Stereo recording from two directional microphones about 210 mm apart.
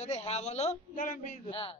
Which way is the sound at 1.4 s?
25° left (ahead or behind).